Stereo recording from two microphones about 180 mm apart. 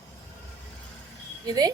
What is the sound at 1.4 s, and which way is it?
Speech, 20° right (ahead or behind).